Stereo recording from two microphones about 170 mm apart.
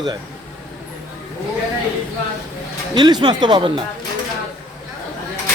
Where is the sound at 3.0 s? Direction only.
25° right (ahead or behind).